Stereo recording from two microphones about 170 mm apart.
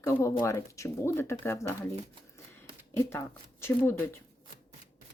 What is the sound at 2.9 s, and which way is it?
Speech, 15° left (ahead or behind).